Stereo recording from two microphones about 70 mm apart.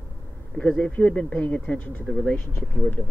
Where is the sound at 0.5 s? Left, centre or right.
Centre; by 2.0 s left.